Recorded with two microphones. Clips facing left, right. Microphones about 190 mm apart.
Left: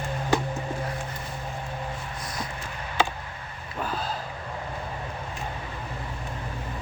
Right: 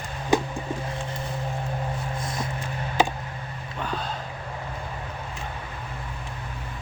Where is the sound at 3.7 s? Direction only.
5° left (ahead or behind).